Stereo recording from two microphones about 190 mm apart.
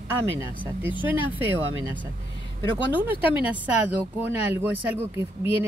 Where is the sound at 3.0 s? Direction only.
10° right (ahead or behind).